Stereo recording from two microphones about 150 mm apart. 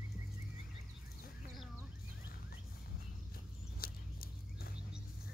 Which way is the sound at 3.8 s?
80° left.